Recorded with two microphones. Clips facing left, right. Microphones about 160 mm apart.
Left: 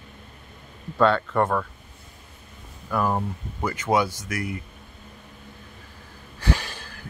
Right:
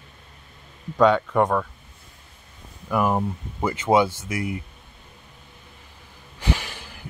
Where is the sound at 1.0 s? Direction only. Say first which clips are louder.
Right 2 dB; 15° right (ahead or behind).